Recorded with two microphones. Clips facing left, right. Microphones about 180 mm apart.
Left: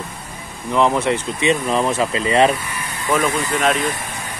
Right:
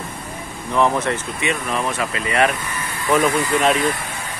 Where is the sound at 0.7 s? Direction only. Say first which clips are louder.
Left 2 dB; 15° left (ahead or behind).